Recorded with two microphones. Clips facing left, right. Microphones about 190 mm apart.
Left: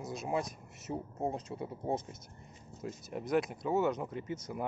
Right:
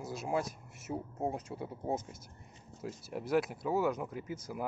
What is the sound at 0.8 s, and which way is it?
Speech, 5° right (ahead or behind).